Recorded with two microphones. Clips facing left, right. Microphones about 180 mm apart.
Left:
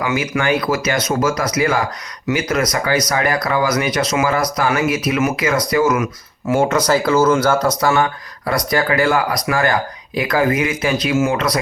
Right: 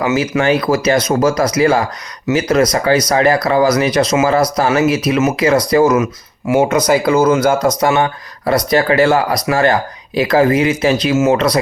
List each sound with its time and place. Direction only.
0.0 s speech: 25° right (ahead or behind)
6.5 s speech: 15° right (ahead or behind); by 11.6 s 30° right (ahead or behind)